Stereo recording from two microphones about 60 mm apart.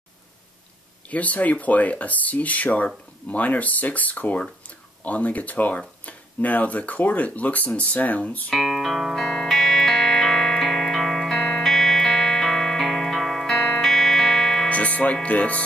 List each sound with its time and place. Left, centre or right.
1.1 s speech: left
8.5 s music: centre
14.7 s music: left
15.2 s speech: left